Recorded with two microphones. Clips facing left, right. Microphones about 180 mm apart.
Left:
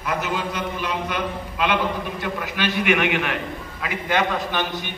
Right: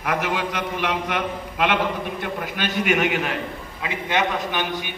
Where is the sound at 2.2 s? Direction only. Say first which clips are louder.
Left 1 dB; 50° right (ahead or behind).